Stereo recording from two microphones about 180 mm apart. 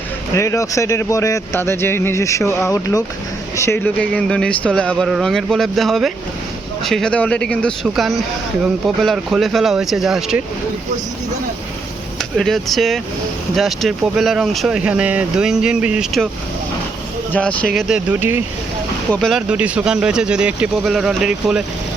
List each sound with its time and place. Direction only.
0.3 s speech: 15° left (ahead or behind); by 10.4 s 5° right (ahead or behind)
12.4 s speech: centre (ahead or behind)
17.3 s speech: 5° left (ahead or behind)
18.1 s speech: 10° right (ahead or behind)
19.1 s speech: centre (ahead or behind)